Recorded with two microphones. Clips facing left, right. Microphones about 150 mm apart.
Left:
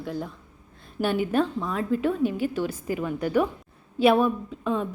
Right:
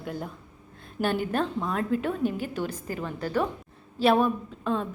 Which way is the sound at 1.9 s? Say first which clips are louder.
Left 6 dB; 45° right (ahead or behind).